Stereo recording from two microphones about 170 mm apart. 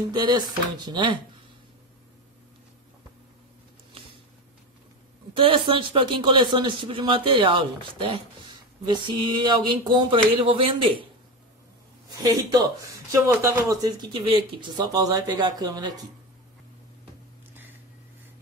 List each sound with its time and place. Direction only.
0.1 s speech: 25° right (ahead or behind)
5.3 s speech: 30° right (ahead or behind)
12.1 s speech: 20° right (ahead or behind)